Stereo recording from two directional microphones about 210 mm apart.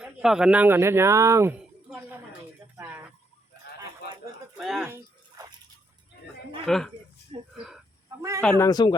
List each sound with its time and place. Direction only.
0.0 s speech: 5° right (ahead or behind)
2.7 s a sound: 10° right (ahead or behind)
4.5 s speech: centre (ahead or behind)
6.7 s speech: centre (ahead or behind)
8.6 s speech: 20° left (ahead or behind)